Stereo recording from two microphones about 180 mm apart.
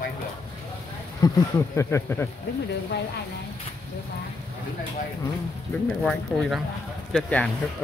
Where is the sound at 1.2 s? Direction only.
20° left (ahead or behind).